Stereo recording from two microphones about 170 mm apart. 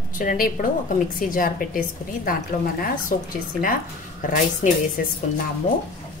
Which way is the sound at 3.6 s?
55° left (ahead or behind).